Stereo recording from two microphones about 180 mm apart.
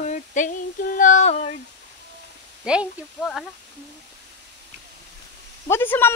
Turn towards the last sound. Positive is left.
turn(degrees=10)  # may be behind; listen again after turning